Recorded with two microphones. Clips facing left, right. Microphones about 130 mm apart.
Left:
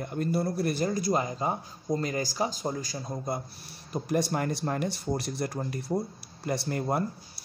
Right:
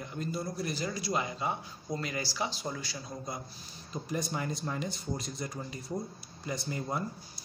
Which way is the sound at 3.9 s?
65° left (ahead or behind).